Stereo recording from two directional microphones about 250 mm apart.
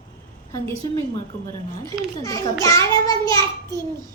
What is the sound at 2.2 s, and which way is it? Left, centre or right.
A woman's voice, centre.